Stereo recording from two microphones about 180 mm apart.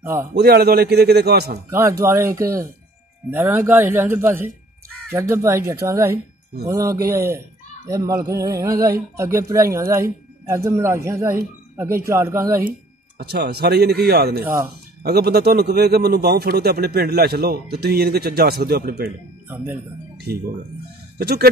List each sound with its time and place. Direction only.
0.0 s a man's voice: 15° right (ahead or behind)
0.3 s a man's voice: 60° right (ahead or behind)
1.7 s speech: 15° right (ahead or behind)
13.2 s a man's voice: 65° right (ahead or behind)
14.4 s speech: 15° right (ahead or behind)
15.0 s a man's voice: 60° right (ahead or behind)
19.5 s speech: 10° right (ahead or behind)
20.3 s a man's voice: 60° right (ahead or behind)